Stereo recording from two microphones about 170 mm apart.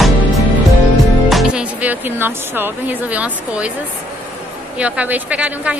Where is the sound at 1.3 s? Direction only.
5° right (ahead or behind).